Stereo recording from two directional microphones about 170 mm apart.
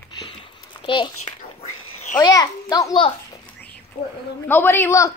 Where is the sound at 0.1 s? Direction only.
30° left (ahead or behind).